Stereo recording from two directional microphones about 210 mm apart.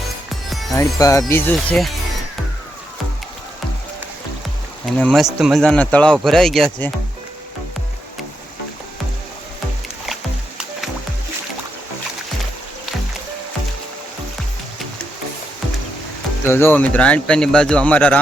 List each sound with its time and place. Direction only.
0.7 s speech: 15° left (ahead or behind)
4.9 s speech: centre (ahead or behind)
16.5 s speech: 10° left (ahead or behind)